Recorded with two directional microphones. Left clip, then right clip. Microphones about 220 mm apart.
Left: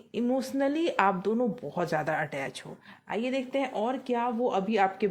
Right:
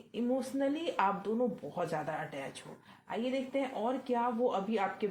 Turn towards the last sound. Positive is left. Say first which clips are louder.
# left 7 dB
turn(degrees=50)  # may be behind; listen again after turning